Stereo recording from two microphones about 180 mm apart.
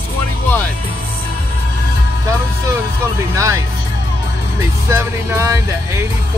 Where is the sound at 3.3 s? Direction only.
15° right (ahead or behind).